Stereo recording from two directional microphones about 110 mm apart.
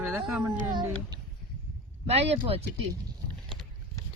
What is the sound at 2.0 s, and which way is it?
Speech, 70° right (ahead or behind).